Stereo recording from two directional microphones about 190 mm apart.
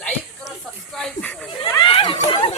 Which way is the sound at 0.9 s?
5° left (ahead or behind).